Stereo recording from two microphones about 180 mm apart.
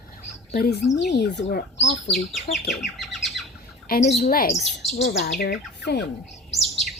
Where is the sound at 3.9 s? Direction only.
55° left (ahead or behind).